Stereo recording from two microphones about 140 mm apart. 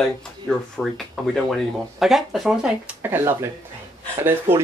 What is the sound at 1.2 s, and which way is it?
Speech, centre (ahead or behind).